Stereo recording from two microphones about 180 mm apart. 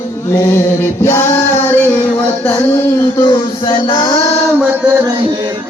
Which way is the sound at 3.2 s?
30° left (ahead or behind).